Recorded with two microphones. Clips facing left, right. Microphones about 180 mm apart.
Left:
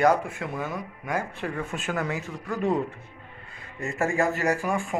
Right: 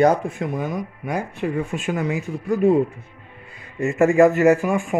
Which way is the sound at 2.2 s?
30° right (ahead or behind).